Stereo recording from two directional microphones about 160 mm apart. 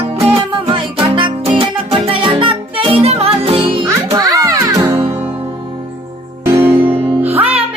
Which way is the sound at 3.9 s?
20° right (ahead or behind).